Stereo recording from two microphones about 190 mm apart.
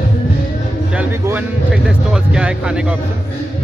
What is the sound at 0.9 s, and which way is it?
Speech, 10° right (ahead or behind).